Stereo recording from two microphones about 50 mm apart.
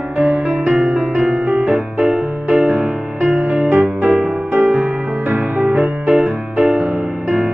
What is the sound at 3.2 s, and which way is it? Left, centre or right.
Music, right.